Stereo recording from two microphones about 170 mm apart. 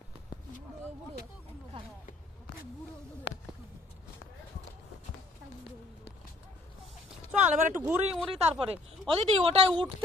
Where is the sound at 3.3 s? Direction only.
90° left.